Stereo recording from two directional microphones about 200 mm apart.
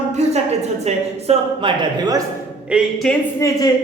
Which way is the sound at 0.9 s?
35° right (ahead or behind).